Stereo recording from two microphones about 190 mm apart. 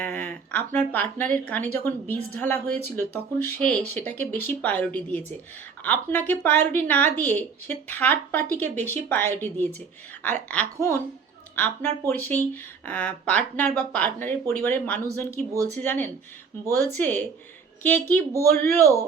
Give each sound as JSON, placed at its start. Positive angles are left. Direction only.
{"t": 0.0, "sound": "a woman's voice", "side_deg": 10}
{"t": 18.8, "sound": "a man's voice", "side_deg": -15}